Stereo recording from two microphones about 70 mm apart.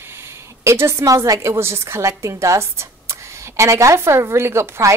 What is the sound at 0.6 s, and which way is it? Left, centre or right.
A woman's voice, right.